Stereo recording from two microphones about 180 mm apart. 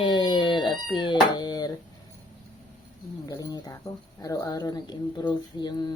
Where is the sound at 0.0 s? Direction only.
25° left (ahead or behind).